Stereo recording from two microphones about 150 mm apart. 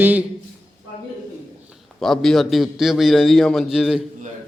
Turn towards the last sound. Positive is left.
turn(degrees=-5)  # may be behind; listen again after turning